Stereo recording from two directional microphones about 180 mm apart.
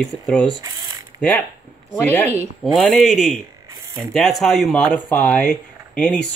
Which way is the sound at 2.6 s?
Centre (ahead or behind).